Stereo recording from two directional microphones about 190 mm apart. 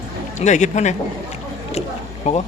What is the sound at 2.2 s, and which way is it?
Speech, 35° left (ahead or behind).